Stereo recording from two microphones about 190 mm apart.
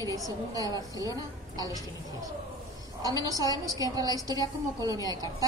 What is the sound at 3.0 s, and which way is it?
A woman's voice, 20° right (ahead or behind).